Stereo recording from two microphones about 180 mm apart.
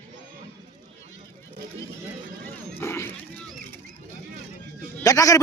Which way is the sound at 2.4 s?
15° left (ahead or behind).